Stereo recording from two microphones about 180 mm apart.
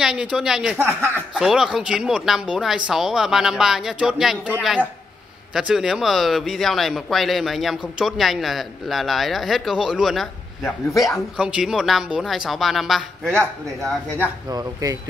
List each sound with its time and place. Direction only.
0.0 s speech: 5° right (ahead or behind)
1.3 s speech: centre (ahead or behind)
11.3 s speech: 5° right (ahead or behind)
14.5 s speech: 20° right (ahead or behind)